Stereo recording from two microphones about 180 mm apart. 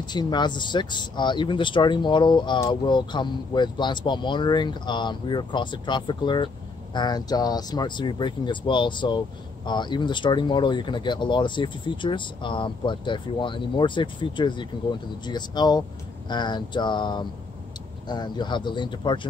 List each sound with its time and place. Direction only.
0.1 s speech: 25° left (ahead or behind)